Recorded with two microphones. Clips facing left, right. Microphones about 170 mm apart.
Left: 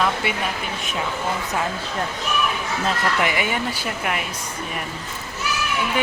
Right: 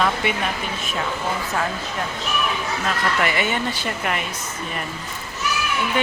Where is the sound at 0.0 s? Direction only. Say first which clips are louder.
Right 1 dB; centre (ahead or behind).